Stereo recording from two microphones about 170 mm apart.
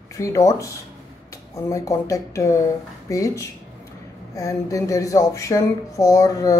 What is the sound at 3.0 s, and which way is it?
Speech, 20° left (ahead or behind).